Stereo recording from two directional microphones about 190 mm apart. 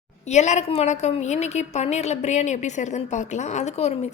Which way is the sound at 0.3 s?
35° left (ahead or behind).